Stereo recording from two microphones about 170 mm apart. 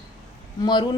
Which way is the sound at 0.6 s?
25° left (ahead or behind).